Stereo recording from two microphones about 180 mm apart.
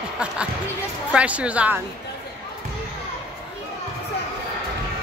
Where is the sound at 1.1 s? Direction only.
5° right (ahead or behind).